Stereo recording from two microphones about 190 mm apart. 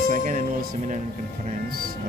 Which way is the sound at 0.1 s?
40° right (ahead or behind).